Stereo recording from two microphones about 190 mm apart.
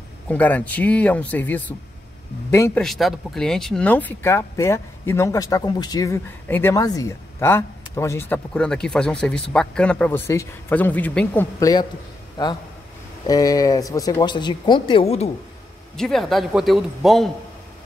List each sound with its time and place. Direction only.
0.3 s speech: 10° left (ahead or behind)
2.8 s speech: centre (ahead or behind)
12.4 s speech: 20° left (ahead or behind)
16.0 s speech: centre (ahead or behind)